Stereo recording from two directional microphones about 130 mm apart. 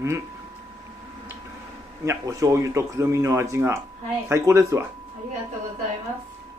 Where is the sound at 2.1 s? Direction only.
25° right (ahead or behind).